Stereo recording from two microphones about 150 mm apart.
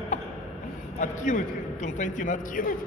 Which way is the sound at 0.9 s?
60° left (ahead or behind).